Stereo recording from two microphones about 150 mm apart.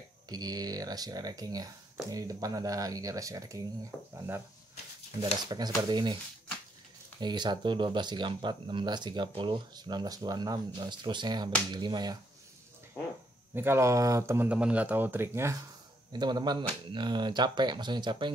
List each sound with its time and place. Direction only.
0.3 s speech: 25° right (ahead or behind)
5.2 s speech: 25° right (ahead or behind)
7.2 s speech: 30° right (ahead or behind)
13.6 s speech: 15° right (ahead or behind)
16.1 s speech: 30° right (ahead or behind)